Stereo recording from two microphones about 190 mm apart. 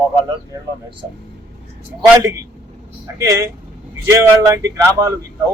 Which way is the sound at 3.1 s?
15° right (ahead or behind).